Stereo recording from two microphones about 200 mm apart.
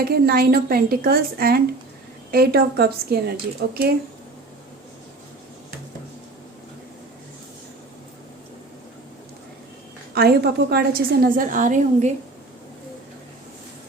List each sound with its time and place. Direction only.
0.0 s a woman's voice: 50° right (ahead or behind)
10.2 s a woman's voice: 50° right (ahead or behind)